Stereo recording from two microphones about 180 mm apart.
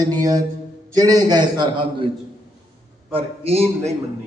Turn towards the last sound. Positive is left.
turn(degrees=-35)  # may be behind; listen again after turning